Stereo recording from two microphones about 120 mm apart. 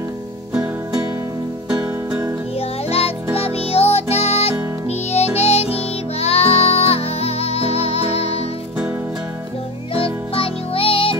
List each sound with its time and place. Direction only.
1.7 s music: 10° right (ahead or behind)
3.3 s music: 55° left (ahead or behind)
9.9 s music: 50° left (ahead or behind)